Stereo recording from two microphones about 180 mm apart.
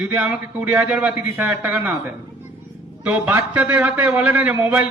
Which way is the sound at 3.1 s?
10° right (ahead or behind).